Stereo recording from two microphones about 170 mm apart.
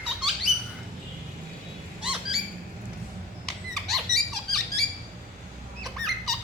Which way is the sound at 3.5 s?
Centre (ahead or behind).